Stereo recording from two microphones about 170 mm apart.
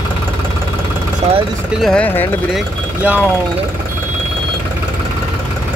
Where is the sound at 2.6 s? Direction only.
10° right (ahead or behind).